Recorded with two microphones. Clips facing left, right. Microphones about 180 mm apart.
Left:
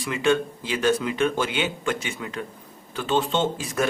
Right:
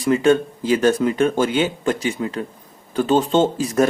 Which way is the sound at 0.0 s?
40° right (ahead or behind).